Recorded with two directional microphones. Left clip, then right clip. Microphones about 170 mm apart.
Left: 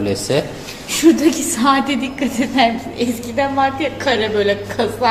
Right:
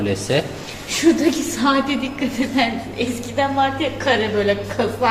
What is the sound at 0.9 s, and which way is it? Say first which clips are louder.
A woman's voice: left 3 dB; 60° left (ahead or behind).